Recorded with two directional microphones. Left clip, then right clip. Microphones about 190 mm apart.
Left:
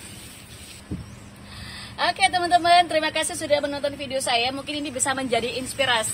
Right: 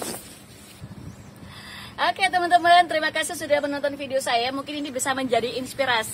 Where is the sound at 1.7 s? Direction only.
Centre (ahead or behind).